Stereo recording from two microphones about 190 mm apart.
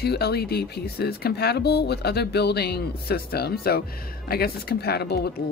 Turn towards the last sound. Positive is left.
turn(degrees=55)  # may be behind; listen again after turning